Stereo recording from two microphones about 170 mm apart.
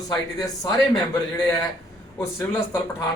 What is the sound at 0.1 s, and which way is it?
Speech, 20° left (ahead or behind).